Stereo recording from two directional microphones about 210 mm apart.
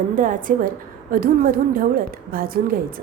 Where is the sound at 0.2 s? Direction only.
40° right (ahead or behind).